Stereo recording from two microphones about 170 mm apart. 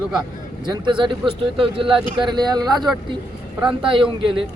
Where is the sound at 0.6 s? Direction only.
25° right (ahead or behind).